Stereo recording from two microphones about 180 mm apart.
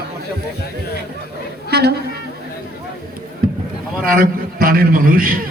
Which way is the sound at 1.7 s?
65° right (ahead or behind).